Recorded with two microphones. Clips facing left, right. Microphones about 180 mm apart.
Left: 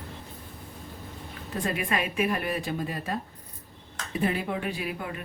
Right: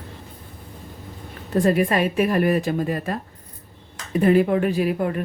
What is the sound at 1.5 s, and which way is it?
Speech, 45° right (ahead or behind).